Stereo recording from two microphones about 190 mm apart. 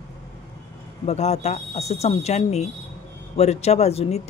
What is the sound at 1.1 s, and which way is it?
A woman's voice, 35° left (ahead or behind).